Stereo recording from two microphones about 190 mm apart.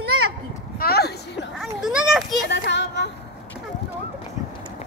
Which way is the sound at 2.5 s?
65° left (ahead or behind).